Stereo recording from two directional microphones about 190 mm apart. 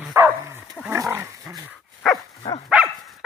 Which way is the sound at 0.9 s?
15° right (ahead or behind).